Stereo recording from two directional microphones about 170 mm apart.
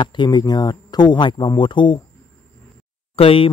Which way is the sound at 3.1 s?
35° left (ahead or behind).